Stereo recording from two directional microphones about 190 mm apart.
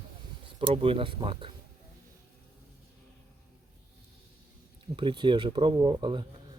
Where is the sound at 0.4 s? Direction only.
30° right (ahead or behind).